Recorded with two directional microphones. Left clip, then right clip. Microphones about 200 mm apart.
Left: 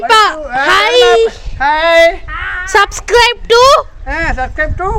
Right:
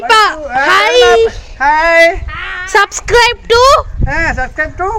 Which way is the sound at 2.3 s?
35° left (ahead or behind).